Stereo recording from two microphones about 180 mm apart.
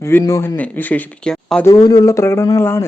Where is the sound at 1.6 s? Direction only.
20° left (ahead or behind).